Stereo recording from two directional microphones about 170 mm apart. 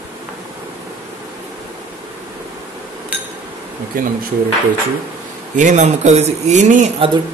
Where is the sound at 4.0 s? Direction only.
55° right (ahead or behind).